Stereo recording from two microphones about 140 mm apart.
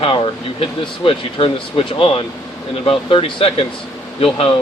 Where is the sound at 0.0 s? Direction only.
35° left (ahead or behind).